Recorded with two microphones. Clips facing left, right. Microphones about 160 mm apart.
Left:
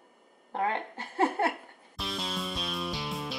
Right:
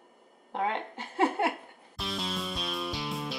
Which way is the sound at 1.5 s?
Centre (ahead or behind).